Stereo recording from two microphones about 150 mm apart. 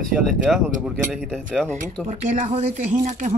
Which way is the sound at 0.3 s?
5° right (ahead or behind).